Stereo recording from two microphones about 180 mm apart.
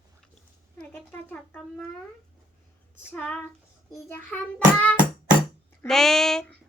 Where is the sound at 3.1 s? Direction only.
10° left (ahead or behind).